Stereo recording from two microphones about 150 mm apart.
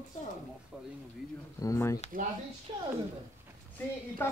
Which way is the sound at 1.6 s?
20° left (ahead or behind).